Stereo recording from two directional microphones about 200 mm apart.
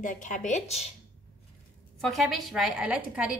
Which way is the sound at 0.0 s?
40° left (ahead or behind).